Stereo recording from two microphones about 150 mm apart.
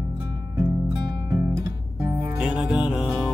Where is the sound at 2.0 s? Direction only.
20° right (ahead or behind).